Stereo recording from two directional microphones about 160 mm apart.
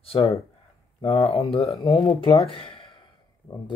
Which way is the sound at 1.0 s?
40° left (ahead or behind).